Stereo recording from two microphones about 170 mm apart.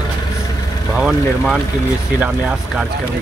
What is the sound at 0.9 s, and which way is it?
Speech, 5° right (ahead or behind).